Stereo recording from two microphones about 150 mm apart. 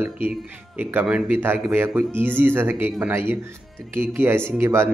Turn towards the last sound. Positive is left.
turn(degrees=-20)  # may be behind; listen again after turning